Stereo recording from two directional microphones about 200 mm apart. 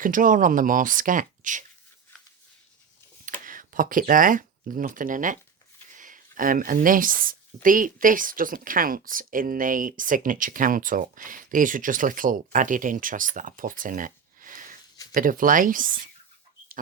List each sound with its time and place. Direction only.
0.0 s speech: 40° right (ahead or behind)
3.2 s speech: 40° right (ahead or behind)